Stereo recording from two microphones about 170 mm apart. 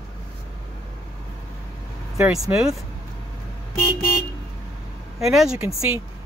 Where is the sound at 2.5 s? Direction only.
5° right (ahead or behind).